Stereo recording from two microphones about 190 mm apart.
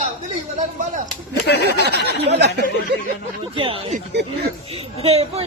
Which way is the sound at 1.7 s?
60° right (ahead or behind).